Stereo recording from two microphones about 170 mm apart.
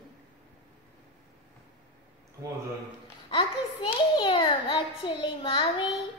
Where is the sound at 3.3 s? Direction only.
25° left (ahead or behind).